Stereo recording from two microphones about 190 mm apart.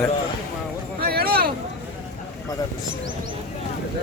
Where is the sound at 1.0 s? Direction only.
55° right (ahead or behind).